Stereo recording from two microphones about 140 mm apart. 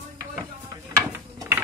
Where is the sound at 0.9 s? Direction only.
20° right (ahead or behind).